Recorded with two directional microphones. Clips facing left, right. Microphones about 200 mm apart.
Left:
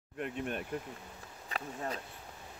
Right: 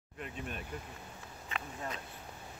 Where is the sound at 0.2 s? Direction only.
60° left (ahead or behind).